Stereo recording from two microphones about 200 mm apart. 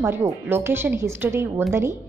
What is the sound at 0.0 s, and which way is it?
A woman's voice, 10° right (ahead or behind).